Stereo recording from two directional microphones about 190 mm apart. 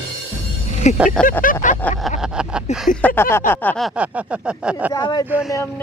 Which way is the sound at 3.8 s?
5° right (ahead or behind).